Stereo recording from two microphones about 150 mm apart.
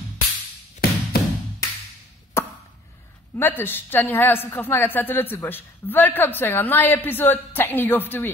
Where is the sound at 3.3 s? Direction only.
15° left (ahead or behind).